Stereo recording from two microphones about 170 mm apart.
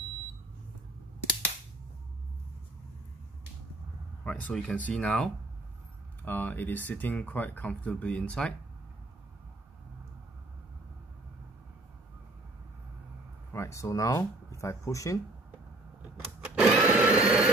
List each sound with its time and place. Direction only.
4.2 s speech: 5° left (ahead or behind)
13.5 s speech: 15° left (ahead or behind)
16.3 s a sound: 10° right (ahead or behind)